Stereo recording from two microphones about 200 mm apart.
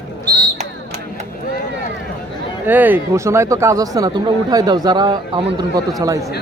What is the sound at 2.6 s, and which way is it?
Speech, 10° right (ahead or behind).